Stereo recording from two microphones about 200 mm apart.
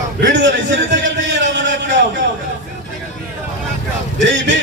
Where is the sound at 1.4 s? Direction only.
65° right (ahead or behind).